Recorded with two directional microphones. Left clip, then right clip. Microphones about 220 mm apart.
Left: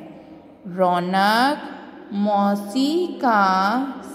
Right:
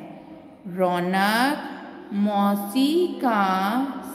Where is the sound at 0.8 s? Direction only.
15° left (ahead or behind).